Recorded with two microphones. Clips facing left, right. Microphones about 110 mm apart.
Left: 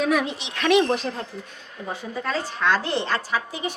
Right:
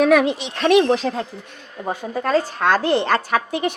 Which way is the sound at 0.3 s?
40° right (ahead or behind).